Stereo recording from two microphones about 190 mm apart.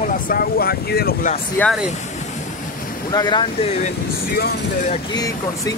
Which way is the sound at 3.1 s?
20° left (ahead or behind).